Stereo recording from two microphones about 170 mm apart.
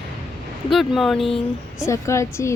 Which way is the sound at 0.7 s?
Centre (ahead or behind).